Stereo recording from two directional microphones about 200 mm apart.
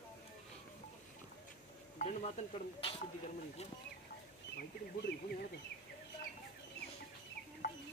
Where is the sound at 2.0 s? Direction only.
35° left (ahead or behind).